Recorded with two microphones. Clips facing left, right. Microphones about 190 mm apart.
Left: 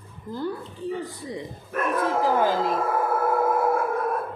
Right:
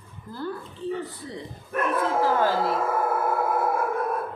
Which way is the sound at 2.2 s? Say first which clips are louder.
Left 1 dB; 15° left (ahead or behind).